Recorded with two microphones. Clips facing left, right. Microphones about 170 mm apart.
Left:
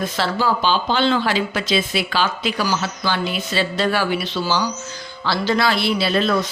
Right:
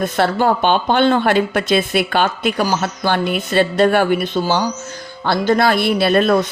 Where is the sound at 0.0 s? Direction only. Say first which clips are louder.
Right 5 dB; 55° right (ahead or behind).